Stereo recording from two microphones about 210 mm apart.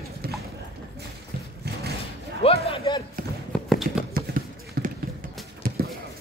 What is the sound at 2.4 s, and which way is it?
Battle cry, 30° left (ahead or behind).